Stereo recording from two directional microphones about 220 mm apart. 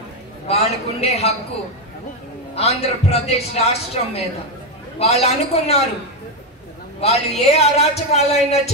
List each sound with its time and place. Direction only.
0.5 s a man's voice: 30° left (ahead or behind)
2.5 s a man's voice: 30° left (ahead or behind)
7.0 s a man's voice: 30° left (ahead or behind)